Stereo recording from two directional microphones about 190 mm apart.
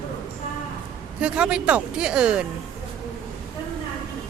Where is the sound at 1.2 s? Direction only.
5° right (ahead or behind).